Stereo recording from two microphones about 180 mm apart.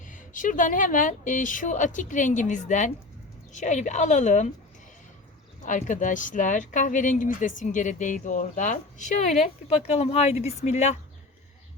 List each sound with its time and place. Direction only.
0.1 s speech: 45° left (ahead or behind)
5.6 s speech: 45° left (ahead or behind)